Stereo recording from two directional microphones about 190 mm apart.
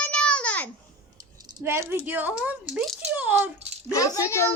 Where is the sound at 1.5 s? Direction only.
15° right (ahead or behind).